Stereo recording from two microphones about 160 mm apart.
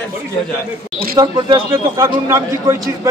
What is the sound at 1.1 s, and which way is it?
A man's voice, 25° right (ahead or behind).